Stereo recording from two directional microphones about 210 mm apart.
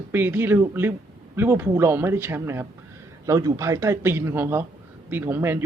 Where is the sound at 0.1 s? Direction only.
10° right (ahead or behind).